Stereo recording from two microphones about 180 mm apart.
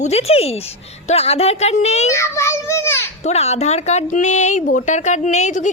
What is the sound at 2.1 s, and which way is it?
Speech, 15° left (ahead or behind).